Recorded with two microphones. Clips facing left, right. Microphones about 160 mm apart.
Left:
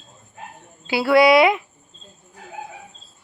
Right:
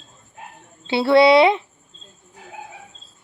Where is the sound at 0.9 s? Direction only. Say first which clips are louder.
Right 1 dB; 25° right (ahead or behind).